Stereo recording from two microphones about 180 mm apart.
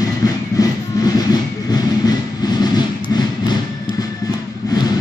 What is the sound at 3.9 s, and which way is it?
Music, 25° right (ahead or behind).